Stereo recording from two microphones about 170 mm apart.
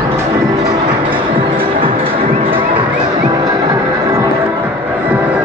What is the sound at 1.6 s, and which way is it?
Music, 30° right (ahead or behind).